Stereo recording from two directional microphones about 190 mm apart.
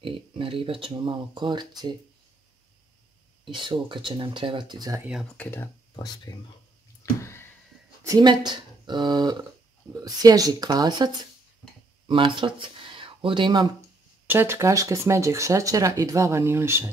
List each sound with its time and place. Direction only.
0.0 s speech: 30° right (ahead or behind)
3.4 s speech: 25° right (ahead or behind)
5.4 s speech: 10° left (ahead or behind)
5.9 s speech: 20° left (ahead or behind)
7.0 s a sound: 15° left (ahead or behind)
8.0 s speech: 20° right (ahead or behind)
12.1 s speech: 25° right (ahead or behind)
14.2 s speech: 10° right (ahead or behind)